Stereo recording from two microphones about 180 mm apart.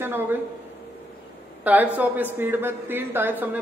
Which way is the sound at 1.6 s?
10° right (ahead or behind).